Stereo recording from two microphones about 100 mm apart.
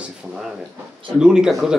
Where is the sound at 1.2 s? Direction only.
5° right (ahead or behind).